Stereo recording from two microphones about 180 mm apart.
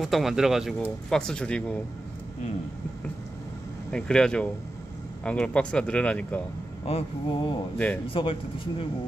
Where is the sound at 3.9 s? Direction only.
5° left (ahead or behind).